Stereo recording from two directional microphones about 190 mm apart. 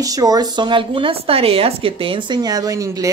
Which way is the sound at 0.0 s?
20° right (ahead or behind).